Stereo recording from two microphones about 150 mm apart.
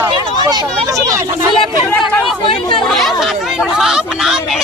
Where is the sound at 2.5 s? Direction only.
30° left (ahead or behind).